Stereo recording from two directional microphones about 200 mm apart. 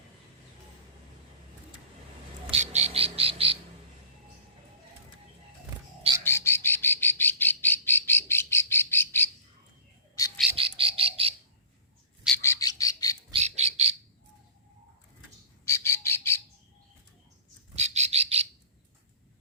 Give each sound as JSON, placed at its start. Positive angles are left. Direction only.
{"t": 2.5, "sound": "bird", "side_deg": -35}
{"t": 6.2, "sound": "bird", "side_deg": 15}
{"t": 10.5, "sound": "bird", "side_deg": -25}
{"t": 12.4, "sound": "bird", "side_deg": 15}
{"t": 13.3, "sound": "bird", "side_deg": -35}
{"t": 15.6, "sound": "bird", "side_deg": 15}
{"t": 17.7, "sound": "bird", "side_deg": -35}